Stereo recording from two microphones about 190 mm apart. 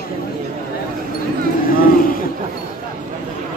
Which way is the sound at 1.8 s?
50° left (ahead or behind).